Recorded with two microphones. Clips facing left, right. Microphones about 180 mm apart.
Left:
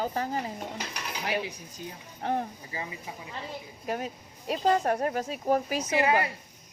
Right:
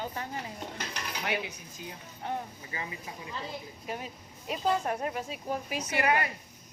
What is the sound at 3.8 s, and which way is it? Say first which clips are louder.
Speech: left 9 dB; 55° left (ahead or behind).